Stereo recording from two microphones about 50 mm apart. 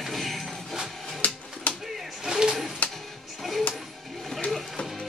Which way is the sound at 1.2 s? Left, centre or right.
Left.